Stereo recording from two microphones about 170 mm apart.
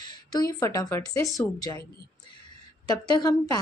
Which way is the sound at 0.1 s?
20° left (ahead or behind).